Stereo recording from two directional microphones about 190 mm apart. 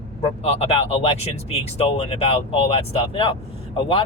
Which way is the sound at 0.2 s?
30° left (ahead or behind).